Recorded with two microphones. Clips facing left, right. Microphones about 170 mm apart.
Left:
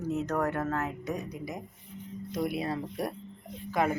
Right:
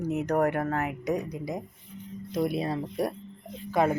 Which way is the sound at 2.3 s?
30° right (ahead or behind).